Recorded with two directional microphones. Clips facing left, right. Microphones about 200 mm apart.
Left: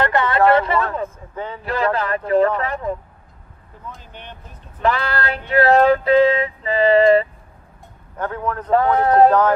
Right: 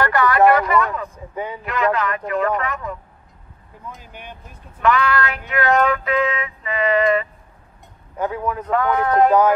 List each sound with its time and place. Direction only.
0.0 s a sound: 25° left (ahead or behind)
0.5 s speech: 30° left (ahead or behind)
1.1 s speech: 15° right (ahead or behind)
1.6 s music: 30° left (ahead or behind)
4.0 s speech: 10° right (ahead or behind)
4.8 s music: 30° left (ahead or behind)
8.2 s speech: 10° right (ahead or behind)
8.6 s music: 30° left (ahead or behind)